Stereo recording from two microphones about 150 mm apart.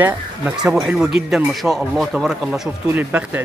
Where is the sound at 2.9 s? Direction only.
10° right (ahead or behind).